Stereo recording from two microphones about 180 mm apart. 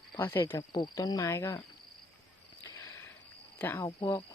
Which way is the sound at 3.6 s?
15° left (ahead or behind).